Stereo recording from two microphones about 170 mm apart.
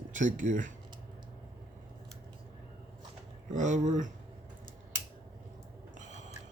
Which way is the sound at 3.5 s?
45° right (ahead or behind).